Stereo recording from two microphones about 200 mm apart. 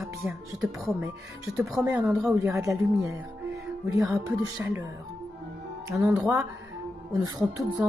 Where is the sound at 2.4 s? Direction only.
15° right (ahead or behind).